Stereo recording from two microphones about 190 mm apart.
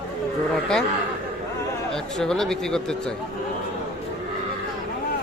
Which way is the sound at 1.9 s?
5° left (ahead or behind).